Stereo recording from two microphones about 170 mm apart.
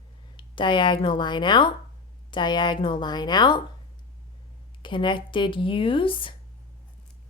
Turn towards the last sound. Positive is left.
turn(degrees=30)  # may be behind; listen again after turning